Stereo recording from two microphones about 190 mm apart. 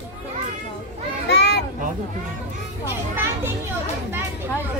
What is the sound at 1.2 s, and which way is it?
Children playing, 60° left (ahead or behind).